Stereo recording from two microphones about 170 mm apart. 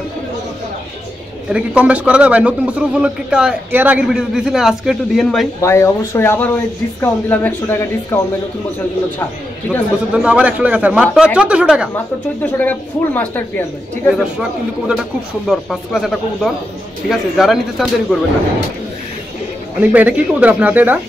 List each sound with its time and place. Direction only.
1.5 s a man's voice: 5° right (ahead or behind)
5.6 s speech: 15° left (ahead or behind)
10.1 s a man's voice: 5° right (ahead or behind)
12.4 s speech: 10° left (ahead or behind)
14.0 s a man's voice: centre (ahead or behind)
19.8 s speech: 10° right (ahead or behind)